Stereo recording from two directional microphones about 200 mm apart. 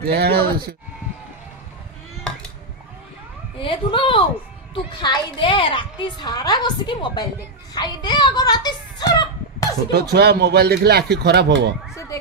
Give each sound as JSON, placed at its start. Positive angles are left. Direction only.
{"t": 0.1, "sound": "speech", "side_deg": -50}
{"t": 3.6, "sound": "a child's voice", "side_deg": 25}
{"t": 9.9, "sound": "speech", "side_deg": -55}